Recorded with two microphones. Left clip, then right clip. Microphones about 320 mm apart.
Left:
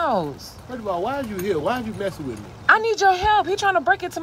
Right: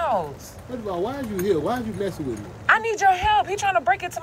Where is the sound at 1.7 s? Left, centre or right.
Centre.